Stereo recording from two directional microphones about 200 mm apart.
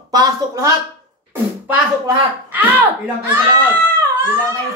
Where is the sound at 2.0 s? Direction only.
10° right (ahead or behind).